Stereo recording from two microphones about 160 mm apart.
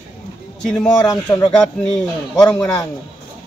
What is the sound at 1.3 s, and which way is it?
Speech, 20° left (ahead or behind).